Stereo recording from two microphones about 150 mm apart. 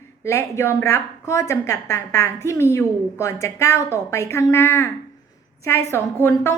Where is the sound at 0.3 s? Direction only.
20° left (ahead or behind).